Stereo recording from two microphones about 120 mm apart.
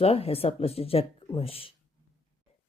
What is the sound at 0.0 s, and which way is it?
Speech, 55° left (ahead or behind).